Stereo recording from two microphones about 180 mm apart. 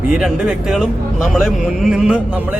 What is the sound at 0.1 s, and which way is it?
Speech, 5° right (ahead or behind).